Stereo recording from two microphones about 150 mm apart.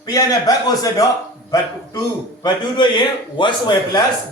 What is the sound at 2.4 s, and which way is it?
A man's voice, 30° left (ahead or behind).